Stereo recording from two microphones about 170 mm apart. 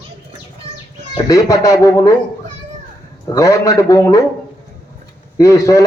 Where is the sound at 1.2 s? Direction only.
20° left (ahead or behind).